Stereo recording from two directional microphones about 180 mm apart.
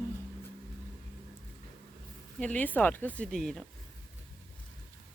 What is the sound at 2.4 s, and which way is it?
Speech, 10° left (ahead or behind).